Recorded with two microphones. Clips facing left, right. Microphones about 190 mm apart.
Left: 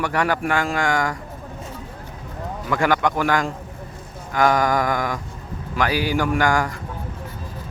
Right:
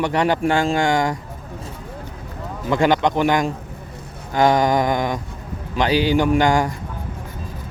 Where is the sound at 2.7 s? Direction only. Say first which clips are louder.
Right 3 dB; 25° right (ahead or behind).